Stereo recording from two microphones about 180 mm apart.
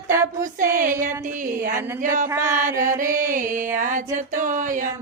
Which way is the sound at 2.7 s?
15° right (ahead or behind).